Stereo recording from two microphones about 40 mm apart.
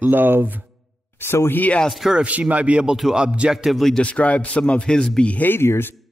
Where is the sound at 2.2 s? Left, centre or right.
Right.